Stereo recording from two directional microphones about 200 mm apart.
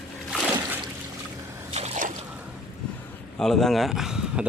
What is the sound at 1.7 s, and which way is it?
Slosh, 30° right (ahead or behind).